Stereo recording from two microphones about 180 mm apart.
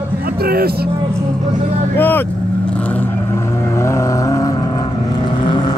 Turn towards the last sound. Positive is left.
turn(degrees=25)  # may be behind; listen again after turning